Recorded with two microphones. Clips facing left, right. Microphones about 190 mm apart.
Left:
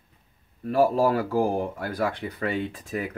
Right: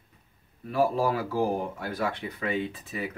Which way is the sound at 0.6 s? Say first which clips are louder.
Left 4 dB; 45° left (ahead or behind).